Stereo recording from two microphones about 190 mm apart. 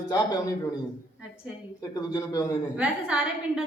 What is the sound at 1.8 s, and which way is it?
Speech, 20° left (ahead or behind).